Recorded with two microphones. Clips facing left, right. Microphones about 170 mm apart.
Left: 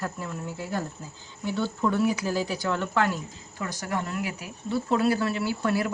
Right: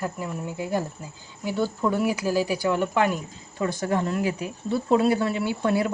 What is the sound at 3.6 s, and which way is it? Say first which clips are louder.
Speech: right 6 dB; 30° right (ahead or behind).